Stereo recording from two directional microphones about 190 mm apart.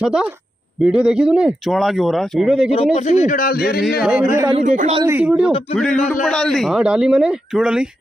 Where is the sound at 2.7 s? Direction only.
35° left (ahead or behind); by 3.8 s 55° left (ahead or behind).